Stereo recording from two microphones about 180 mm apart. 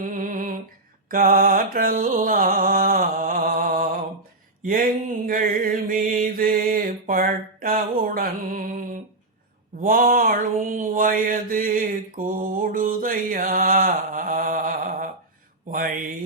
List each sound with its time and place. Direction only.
0.0 s music: 45° right (ahead or behind)
4.6 s mantra: 50° right (ahead or behind)
15.7 s a sound: 50° right (ahead or behind)